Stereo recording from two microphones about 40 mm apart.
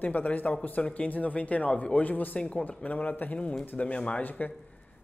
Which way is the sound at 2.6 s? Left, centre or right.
Left.